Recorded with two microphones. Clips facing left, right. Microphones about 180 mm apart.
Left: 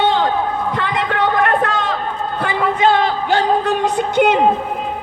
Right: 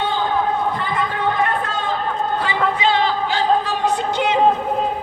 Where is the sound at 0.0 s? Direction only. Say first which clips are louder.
Left 4 dB; 80° left.